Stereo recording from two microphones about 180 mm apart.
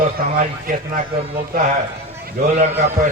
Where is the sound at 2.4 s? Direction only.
50° right (ahead or behind).